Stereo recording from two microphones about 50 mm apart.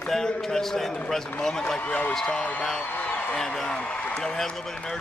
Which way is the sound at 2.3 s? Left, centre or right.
Left.